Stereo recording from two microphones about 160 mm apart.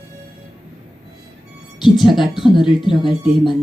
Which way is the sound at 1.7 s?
30° left (ahead or behind).